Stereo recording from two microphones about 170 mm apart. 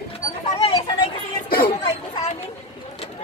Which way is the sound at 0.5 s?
35° left (ahead or behind).